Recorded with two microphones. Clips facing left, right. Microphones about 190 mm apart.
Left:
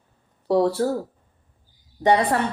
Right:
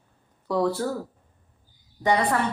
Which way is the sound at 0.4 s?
30° left (ahead or behind).